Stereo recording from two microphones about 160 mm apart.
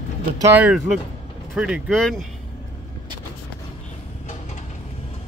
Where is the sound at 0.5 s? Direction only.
10° right (ahead or behind).